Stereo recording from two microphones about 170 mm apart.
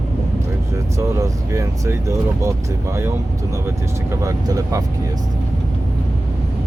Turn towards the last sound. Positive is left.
turn(degrees=-20)  # may be behind; listen again after turning